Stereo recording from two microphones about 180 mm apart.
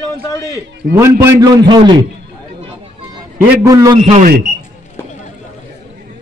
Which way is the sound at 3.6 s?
20° right (ahead or behind).